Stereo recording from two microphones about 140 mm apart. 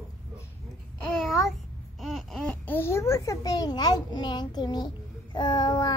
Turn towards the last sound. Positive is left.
turn(degrees=30)  # may be behind; listen again after turning